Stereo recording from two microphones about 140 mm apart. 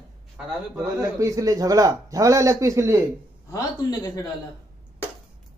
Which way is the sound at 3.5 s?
25° left (ahead or behind).